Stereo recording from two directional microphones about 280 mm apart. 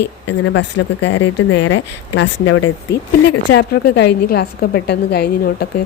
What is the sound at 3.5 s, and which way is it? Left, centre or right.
A woman's voice, left.